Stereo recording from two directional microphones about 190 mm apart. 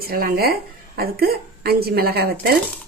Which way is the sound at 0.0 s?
50° right (ahead or behind).